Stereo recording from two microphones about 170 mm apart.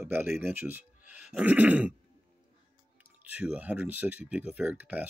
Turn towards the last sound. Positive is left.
turn(degrees=-10)  # may be behind; listen again after turning